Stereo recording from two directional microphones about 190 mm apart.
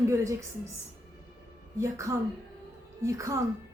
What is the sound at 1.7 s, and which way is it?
A woman's voice, 15° right (ahead or behind).